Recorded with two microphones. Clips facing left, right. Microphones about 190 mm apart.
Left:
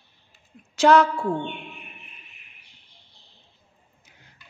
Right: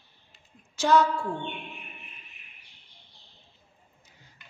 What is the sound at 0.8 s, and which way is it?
Speech, 75° left (ahead or behind).